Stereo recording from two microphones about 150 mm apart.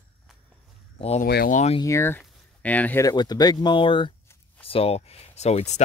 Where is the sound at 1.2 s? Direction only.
75° left (ahead or behind).